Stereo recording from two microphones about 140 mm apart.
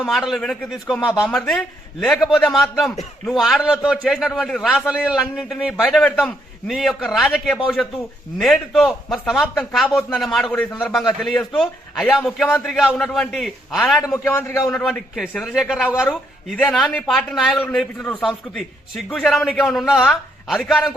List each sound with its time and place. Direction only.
0.0 s a man's voice: centre (ahead or behind)
8.7 s a man's voice: centre (ahead or behind)
14.3 s a man's voice: 20° left (ahead or behind)
14.7 s a man's voice: 5° left (ahead or behind)